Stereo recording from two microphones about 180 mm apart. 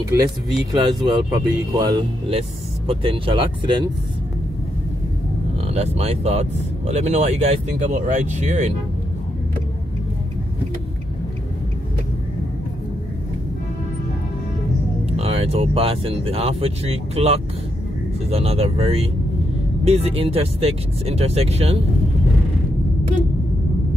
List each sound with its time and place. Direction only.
0.7 s speech: 20° right (ahead or behind)
5.7 s speech: 35° right (ahead or behind)
15.1 s speech: 35° right (ahead or behind)